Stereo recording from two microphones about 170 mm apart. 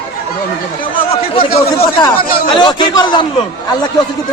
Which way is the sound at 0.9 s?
35° left (ahead or behind).